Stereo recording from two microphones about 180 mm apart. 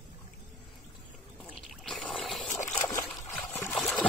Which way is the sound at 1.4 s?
5° left (ahead or behind).